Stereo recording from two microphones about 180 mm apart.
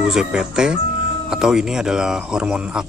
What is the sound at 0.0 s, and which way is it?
Speech, 5° right (ahead or behind).